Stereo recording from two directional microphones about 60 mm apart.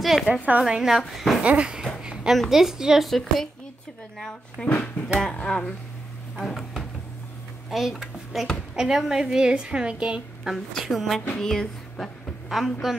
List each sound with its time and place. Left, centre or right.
0.0 s a woman's voice: centre
0.5 s a woman's voice: centre
1.4 s speech: centre
2.0 s a sound: centre
2.5 s a woman's voice: centre
3.1 s speech: centre
4.6 s speech: left
6.3 s speech: centre
7.7 s a woman's voice: centre
10.7 s speech: centre
12.4 s a woman's voice: centre